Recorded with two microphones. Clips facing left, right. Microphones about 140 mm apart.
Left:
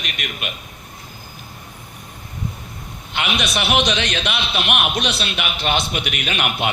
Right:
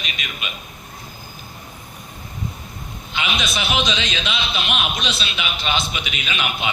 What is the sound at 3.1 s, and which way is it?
A man's voice, 65° left (ahead or behind).